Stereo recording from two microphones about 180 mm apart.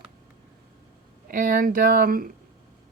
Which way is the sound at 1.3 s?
50° right (ahead or behind).